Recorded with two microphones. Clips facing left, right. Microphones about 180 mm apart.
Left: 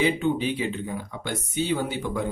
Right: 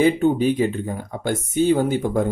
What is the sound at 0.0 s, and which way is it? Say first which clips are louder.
Speech: right 6 dB; 45° right (ahead or behind).